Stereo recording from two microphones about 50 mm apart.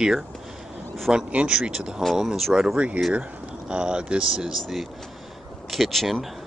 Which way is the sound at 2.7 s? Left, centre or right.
Right.